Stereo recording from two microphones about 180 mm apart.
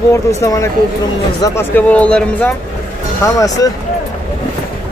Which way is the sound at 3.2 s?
20° left (ahead or behind).